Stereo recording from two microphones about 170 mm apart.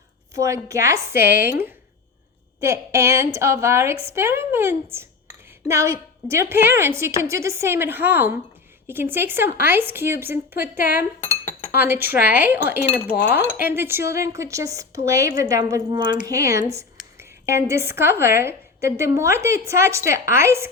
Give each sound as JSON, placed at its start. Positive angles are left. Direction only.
{"t": 0.3, "sound": "a woman's voice", "side_deg": -20}
{"t": 1.2, "sound": "speech", "side_deg": 55}
{"t": 2.6, "sound": "a woman's voice", "side_deg": -15}
{"t": 12.9, "sound": "speech", "side_deg": 10}
{"t": 13.3, "sound": "a woman's voice", "side_deg": -10}